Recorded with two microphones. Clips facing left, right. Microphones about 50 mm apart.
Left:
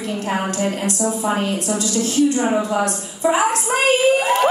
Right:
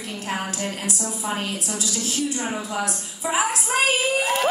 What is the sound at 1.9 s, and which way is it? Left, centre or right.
A woman's voice, centre.